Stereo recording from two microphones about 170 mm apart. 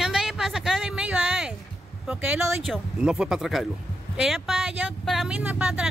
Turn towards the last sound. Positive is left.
turn(degrees=-5)  # may be behind; listen again after turning